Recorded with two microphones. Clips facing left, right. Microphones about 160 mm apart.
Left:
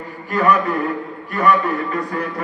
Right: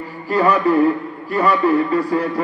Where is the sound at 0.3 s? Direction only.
30° right (ahead or behind).